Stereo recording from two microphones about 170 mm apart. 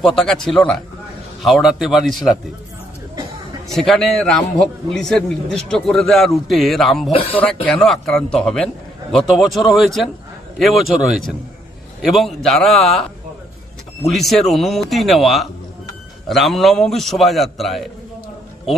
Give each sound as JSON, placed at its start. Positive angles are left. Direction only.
{"t": 0.0, "sound": "a man's voice", "side_deg": 0}
{"t": 3.6, "sound": "a man's voice", "side_deg": 0}
{"t": 7.1, "sound": "speech", "side_deg": 35}
{"t": 7.6, "sound": "a man's voice", "side_deg": 5}
{"t": 14.0, "sound": "a man's voice", "side_deg": 0}